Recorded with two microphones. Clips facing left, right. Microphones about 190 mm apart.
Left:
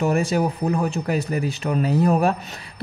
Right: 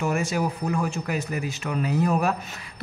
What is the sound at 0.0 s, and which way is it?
Speech, 35° left (ahead or behind).